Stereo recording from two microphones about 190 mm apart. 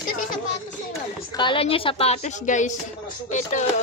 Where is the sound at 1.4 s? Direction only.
25° left (ahead or behind).